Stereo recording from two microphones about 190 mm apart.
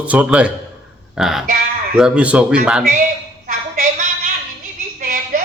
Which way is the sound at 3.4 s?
45° right (ahead or behind).